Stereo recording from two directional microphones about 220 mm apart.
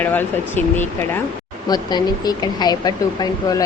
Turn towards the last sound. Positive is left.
turn(degrees=15)  # may be behind; listen again after turning